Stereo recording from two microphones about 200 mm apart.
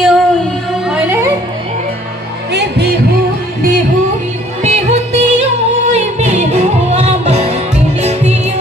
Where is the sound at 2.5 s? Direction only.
55° right (ahead or behind).